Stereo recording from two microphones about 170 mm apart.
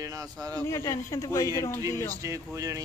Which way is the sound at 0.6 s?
15° left (ahead or behind).